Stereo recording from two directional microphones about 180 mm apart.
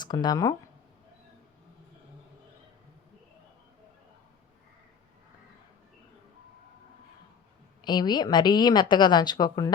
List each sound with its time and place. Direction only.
0.0 s speech: 25° left (ahead or behind)
7.9 s a woman's voice: 25° left (ahead or behind)